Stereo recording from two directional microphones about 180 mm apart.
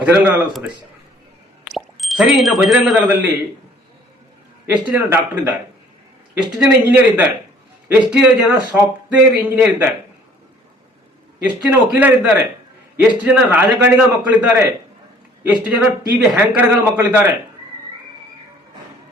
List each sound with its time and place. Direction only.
0.0 s a man's voice: 10° right (ahead or behind)
1.6 s speech: centre (ahead or behind)
4.6 s a man's voice: 10° right (ahead or behind)
6.6 s a man's voice: 10° right (ahead or behind)
11.9 s a man's voice: 10° right (ahead or behind)
15.6 s a man's voice: 5° right (ahead or behind)